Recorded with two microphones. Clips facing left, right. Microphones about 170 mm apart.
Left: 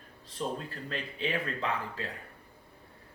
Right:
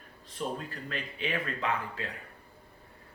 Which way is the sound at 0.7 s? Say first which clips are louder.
Even; 35° left (ahead or behind).